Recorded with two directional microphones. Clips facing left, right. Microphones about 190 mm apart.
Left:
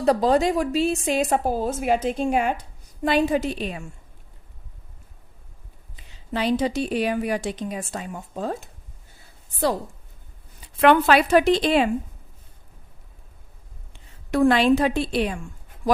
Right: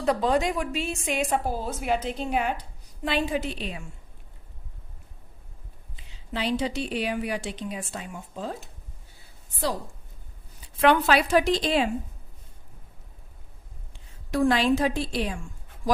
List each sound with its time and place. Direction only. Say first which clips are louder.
0.0 s a woman's voice: left 5 dB; 35° left (ahead or behind)
6.3 s a woman's voice: left 5 dB; 45° left (ahead or behind)
10.8 s a woman's voice: left 4 dB; 60° left (ahead or behind)
14.3 s a woman's voice: left 4 dB; 60° left (ahead or behind)